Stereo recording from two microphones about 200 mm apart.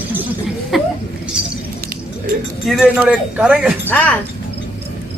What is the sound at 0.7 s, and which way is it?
Speech, centre (ahead or behind).